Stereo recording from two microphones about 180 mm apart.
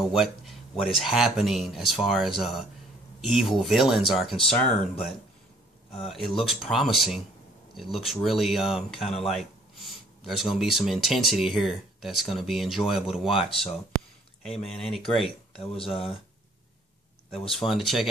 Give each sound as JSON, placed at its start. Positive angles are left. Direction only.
{"t": 0.1, "sound": "speech", "side_deg": 0}
{"t": 4.4, "sound": "speech", "side_deg": 30}
{"t": 5.9, "sound": "speech", "side_deg": 0}
{"t": 17.5, "sound": "speech", "side_deg": 0}